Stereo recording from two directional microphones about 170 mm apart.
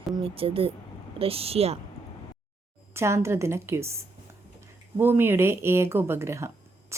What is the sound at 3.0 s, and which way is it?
A woman's voice, 15° right (ahead or behind).